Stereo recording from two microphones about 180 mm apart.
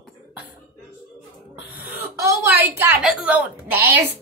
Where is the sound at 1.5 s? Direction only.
10° right (ahead or behind).